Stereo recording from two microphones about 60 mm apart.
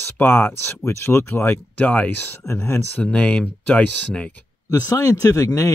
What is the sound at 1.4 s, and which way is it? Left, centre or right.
Speech, left.